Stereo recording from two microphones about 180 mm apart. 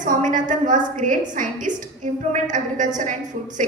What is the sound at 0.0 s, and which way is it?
A woman's voice, 45° right (ahead or behind).